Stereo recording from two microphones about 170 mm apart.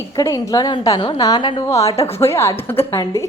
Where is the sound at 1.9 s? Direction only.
35° left (ahead or behind).